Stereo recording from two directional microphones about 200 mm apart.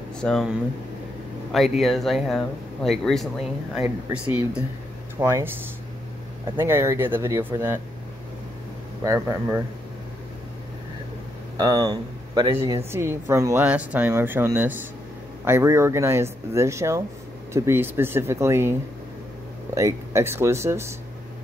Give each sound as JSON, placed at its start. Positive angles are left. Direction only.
{"t": 0.2, "sound": "speech", "side_deg": 5}
{"t": 1.5, "sound": "speech", "side_deg": 0}
{"t": 6.6, "sound": "speech", "side_deg": -15}
{"t": 9.0, "sound": "speech", "side_deg": -15}
{"t": 11.6, "sound": "speech", "side_deg": -20}